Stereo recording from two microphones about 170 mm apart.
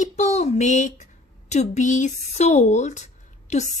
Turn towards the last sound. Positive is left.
turn(degrees=45)  # may be behind; listen again after turning